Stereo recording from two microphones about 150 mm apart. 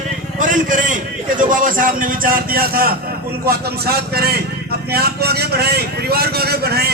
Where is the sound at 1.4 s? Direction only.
65° right (ahead or behind).